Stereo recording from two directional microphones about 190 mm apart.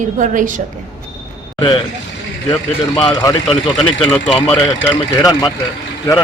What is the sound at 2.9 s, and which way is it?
Speech, 25° left (ahead or behind).